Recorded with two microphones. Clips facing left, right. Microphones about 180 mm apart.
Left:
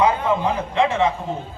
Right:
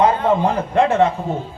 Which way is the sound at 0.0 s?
50° right (ahead or behind).